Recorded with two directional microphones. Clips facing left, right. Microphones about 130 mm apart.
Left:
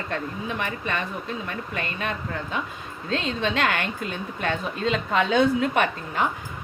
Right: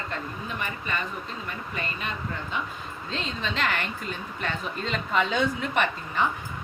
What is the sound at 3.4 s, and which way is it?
Speech, 65° left (ahead or behind).